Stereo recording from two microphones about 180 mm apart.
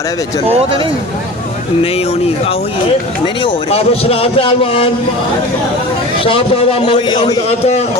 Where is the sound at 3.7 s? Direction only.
35° left (ahead or behind).